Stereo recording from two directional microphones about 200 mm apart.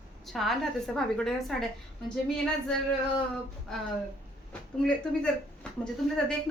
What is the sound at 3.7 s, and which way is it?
A woman's voice, 5° left (ahead or behind).